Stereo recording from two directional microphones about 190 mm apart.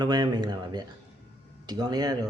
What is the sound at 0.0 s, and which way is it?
Speech, 20° right (ahead or behind).